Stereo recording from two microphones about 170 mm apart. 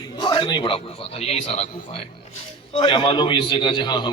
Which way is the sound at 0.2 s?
25° left (ahead or behind).